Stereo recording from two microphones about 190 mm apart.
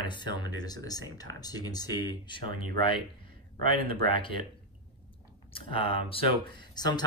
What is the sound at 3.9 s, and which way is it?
Speech, 25° left (ahead or behind).